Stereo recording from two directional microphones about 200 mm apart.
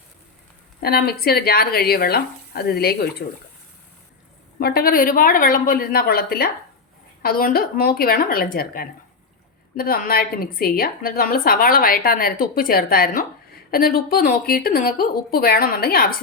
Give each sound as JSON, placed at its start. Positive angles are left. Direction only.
{"t": 0.8, "sound": "a woman's voice", "side_deg": 50}
{"t": 4.6, "sound": "a woman's voice", "side_deg": 50}